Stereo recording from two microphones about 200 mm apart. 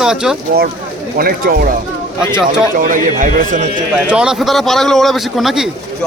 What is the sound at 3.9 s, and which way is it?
Speech, 5° right (ahead or behind).